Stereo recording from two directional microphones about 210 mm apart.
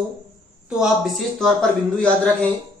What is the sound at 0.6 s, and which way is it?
A man's voice, 5° right (ahead or behind).